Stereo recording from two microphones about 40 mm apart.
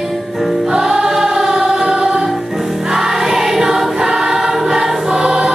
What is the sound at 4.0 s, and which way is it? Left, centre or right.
Choir, centre.